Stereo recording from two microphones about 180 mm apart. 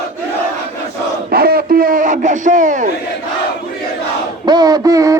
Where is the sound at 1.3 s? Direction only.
55° right (ahead or behind).